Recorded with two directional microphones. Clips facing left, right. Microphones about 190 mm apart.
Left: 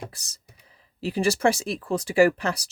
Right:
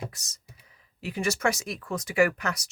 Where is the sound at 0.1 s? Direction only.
30° left (ahead or behind).